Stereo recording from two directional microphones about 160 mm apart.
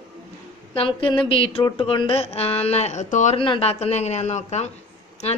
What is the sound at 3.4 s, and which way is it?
Speech, 35° left (ahead or behind).